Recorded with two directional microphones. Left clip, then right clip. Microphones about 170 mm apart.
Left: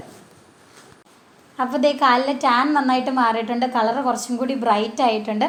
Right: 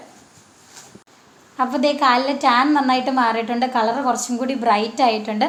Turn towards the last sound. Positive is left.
turn(degrees=25)  # may be behind; listen again after turning